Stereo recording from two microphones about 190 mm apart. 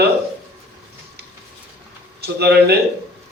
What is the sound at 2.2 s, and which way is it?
Speech, 60° right (ahead or behind).